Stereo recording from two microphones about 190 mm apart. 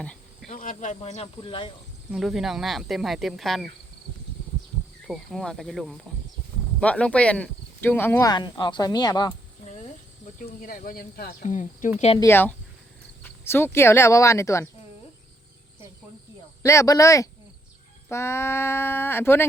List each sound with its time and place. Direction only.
0.5 s speech: 45° left (ahead or behind); by 1.7 s 25° left (ahead or behind)
2.1 s speech: centre (ahead or behind)
5.0 s speech: centre (ahead or behind)
8.3 s speech: 25° left (ahead or behind)
10.4 s speech: 50° left (ahead or behind)
11.4 s speech: 40° left (ahead or behind)
12.2 s speech: 10° left (ahead or behind)
16.6 s speech: 15° left (ahead or behind)